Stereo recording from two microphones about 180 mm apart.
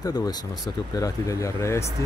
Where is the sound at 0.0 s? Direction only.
20° left (ahead or behind).